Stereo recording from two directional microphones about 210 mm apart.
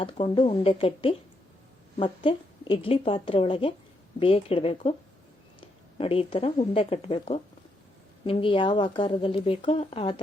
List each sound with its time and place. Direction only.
0.0 s speech: 25° left (ahead or behind)